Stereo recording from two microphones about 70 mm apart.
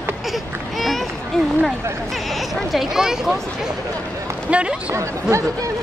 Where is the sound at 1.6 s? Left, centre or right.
Centre.